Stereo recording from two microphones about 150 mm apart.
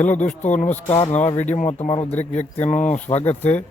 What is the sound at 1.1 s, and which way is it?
Speech, 50° left (ahead or behind).